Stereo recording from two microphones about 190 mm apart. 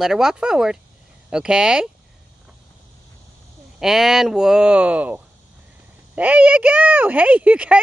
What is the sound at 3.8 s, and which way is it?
Speech, centre (ahead or behind).